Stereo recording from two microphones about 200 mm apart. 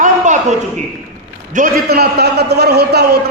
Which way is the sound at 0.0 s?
35° right (ahead or behind).